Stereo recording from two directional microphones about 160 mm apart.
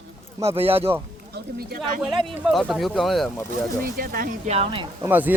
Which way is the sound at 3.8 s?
65° right (ahead or behind).